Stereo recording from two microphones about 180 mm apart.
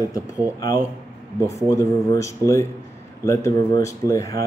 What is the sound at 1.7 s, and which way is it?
A man's voice, 15° left (ahead or behind).